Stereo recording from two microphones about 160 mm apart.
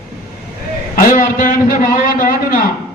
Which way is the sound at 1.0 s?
60° left (ahead or behind).